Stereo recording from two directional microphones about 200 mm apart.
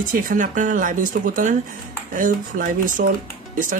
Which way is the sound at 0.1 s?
40° right (ahead or behind).